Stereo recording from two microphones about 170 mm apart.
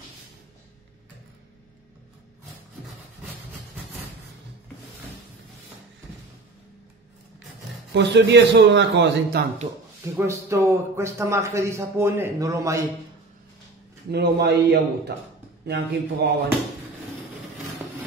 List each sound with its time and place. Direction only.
7.9 s a man's voice: 90° right
10.1 s speech: 15° right (ahead or behind)
14.1 s a man's voice: 75° right (ahead or behind)